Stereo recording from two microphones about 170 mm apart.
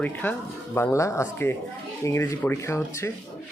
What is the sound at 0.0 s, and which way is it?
Speech, 10° left (ahead or behind).